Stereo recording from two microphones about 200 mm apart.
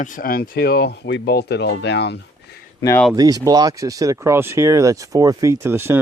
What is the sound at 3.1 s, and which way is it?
Speech, 20° right (ahead or behind).